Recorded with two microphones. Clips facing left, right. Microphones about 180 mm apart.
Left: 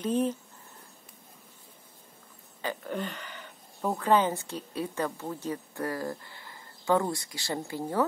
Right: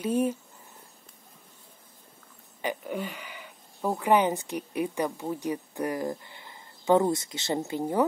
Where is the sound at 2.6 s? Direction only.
10° right (ahead or behind).